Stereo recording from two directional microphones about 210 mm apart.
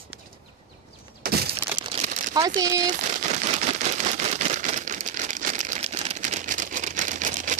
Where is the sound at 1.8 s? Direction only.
30° right (ahead or behind).